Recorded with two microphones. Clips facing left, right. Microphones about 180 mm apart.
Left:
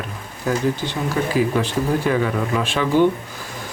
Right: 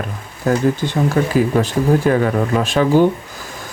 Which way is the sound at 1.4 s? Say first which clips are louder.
Right 2 dB; 45° right (ahead or behind).